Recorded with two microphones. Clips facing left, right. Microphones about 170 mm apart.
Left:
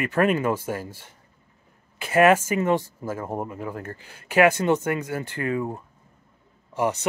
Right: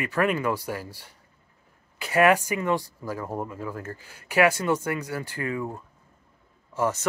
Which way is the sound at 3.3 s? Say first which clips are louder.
Left 2 dB; 20° left (ahead or behind).